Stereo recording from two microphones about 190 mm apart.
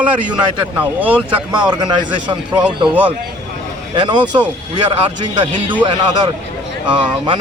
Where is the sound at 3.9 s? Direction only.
25° right (ahead or behind).